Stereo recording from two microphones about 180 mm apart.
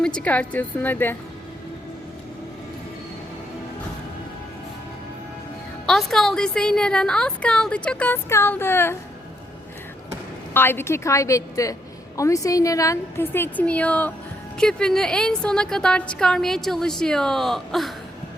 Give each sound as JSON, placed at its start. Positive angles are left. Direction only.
{"t": 0.0, "sound": "a woman's voice", "side_deg": 5}
{"t": 5.8, "sound": "a woman's voice", "side_deg": 0}
{"t": 10.5, "sound": "a woman's voice", "side_deg": 10}